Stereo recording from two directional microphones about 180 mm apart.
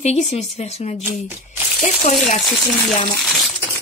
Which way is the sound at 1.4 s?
45° left (ahead or behind).